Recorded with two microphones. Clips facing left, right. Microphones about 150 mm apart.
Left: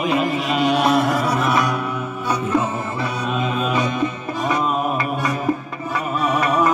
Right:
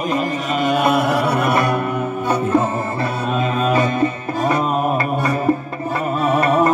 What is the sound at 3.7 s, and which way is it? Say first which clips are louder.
Music: right 4 dB; 55° right (ahead or behind).